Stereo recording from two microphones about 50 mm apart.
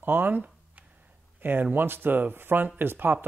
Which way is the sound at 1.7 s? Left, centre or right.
Right.